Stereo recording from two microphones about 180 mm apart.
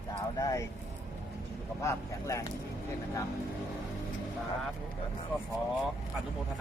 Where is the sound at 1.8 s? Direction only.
15° left (ahead or behind).